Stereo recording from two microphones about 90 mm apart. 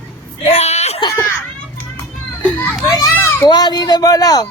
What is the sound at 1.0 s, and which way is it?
Speech, 60° left (ahead or behind).